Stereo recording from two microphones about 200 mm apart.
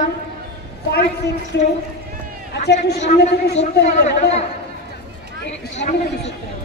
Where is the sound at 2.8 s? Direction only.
55° left (ahead or behind).